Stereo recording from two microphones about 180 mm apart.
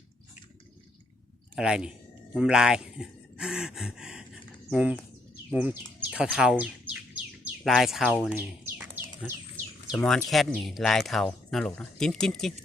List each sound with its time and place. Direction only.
1.5 s speech: 5° right (ahead or behind)
10.0 s speech: 5° left (ahead or behind)